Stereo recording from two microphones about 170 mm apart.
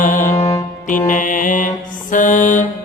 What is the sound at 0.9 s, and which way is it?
Mantra, 50° left (ahead or behind).